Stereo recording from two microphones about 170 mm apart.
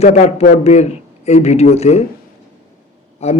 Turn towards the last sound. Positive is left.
turn(degrees=40)  # may be behind; listen again after turning